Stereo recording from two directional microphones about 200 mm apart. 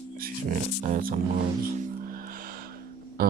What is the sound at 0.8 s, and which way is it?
Speech, 45° right (ahead or behind).